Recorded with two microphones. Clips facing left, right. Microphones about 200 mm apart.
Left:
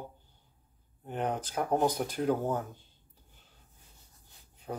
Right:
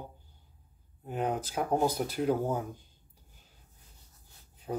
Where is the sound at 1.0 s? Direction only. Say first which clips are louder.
Right 1 dB; 5° right (ahead or behind).